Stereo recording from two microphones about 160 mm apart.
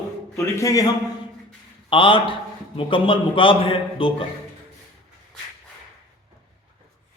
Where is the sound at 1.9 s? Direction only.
35° left (ahead or behind).